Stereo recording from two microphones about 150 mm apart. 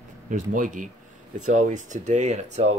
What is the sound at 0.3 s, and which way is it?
Speech, 60° right (ahead or behind).